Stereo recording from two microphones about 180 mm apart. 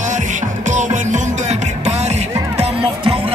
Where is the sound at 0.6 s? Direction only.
45° right (ahead or behind).